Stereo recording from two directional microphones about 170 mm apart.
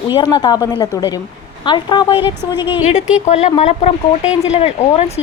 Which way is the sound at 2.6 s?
10° right (ahead or behind).